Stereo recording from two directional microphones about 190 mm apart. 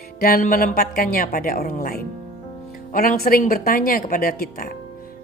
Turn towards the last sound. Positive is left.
turn(degrees=50)  # may be behind; listen again after turning